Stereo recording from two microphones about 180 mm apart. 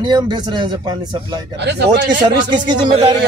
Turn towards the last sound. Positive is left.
turn(degrees=-25)  # may be behind; listen again after turning